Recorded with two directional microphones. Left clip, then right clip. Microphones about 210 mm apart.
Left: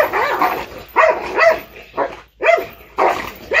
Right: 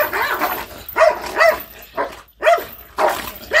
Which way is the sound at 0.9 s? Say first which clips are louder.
Left 1 dB; 5° right (ahead or behind).